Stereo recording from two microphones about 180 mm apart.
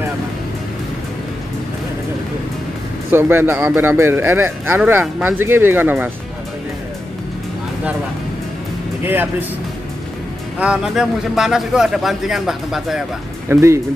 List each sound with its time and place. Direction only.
3.1 s speech: 10° right (ahead or behind)
9.0 s speech: 10° right (ahead or behind)
10.6 s a man's voice: 5° right (ahead or behind)
13.5 s speech: 15° right (ahead or behind)